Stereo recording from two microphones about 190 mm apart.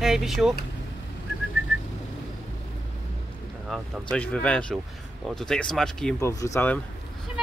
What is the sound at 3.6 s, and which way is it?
Speech, centre (ahead or behind).